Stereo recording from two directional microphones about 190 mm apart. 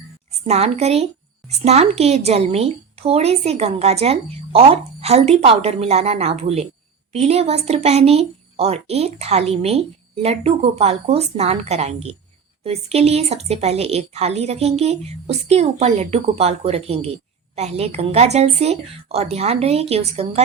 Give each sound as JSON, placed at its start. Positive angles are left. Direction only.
{"t": 0.4, "sound": "speech", "side_deg": -35}